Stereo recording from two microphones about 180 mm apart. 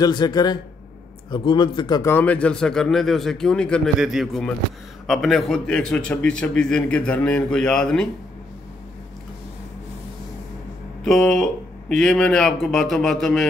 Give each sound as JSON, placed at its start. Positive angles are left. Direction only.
{"t": 0.0, "sound": "a man's voice", "side_deg": 25}
{"t": 11.1, "sound": "a man's voice", "side_deg": 0}